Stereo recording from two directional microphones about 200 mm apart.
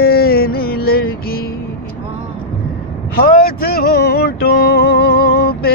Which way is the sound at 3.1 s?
50° left (ahead or behind).